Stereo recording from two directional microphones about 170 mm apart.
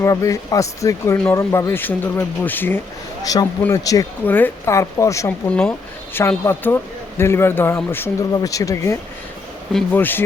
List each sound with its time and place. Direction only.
0.0 s speech: 20° left (ahead or behind)
5.5 s speech: 5° left (ahead or behind)